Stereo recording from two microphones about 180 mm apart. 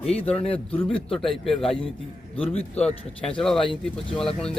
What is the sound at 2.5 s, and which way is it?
Speech, 35° left (ahead or behind).